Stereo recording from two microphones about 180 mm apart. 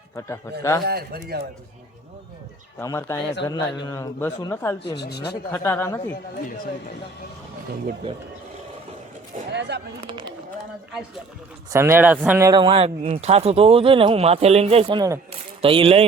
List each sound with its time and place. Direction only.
0.5 s speech: 15° left (ahead or behind)
0.9 s speech: 60° right (ahead or behind)
2.7 s speech: 15° left (ahead or behind)
4.9 s speech: 65° left (ahead or behind)
5.5 s speech: 10° left (ahead or behind)
9.5 s a sound: 75° right (ahead or behind)
10.1 s a sound: 25° right (ahead or behind)
11.7 s speech: 15° right (ahead or behind)
12.5 s a man's voice: 25° right (ahead or behind)